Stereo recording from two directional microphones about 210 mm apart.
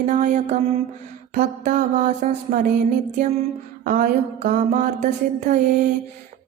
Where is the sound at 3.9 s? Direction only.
40° right (ahead or behind).